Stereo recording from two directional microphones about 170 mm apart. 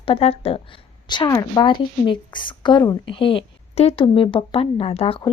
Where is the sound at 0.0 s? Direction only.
35° left (ahead or behind).